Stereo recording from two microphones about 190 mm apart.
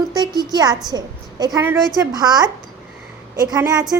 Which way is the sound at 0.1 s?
20° right (ahead or behind).